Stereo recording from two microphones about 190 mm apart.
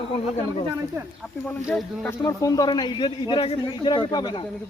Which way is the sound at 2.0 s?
15° left (ahead or behind).